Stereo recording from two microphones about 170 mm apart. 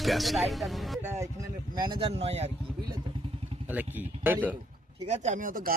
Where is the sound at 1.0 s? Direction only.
15° right (ahead or behind); by 2.5 s 35° right (ahead or behind).